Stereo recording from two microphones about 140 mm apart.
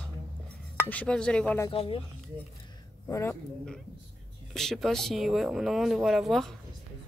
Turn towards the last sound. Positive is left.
turn(degrees=0)  # may be behind; listen again after turning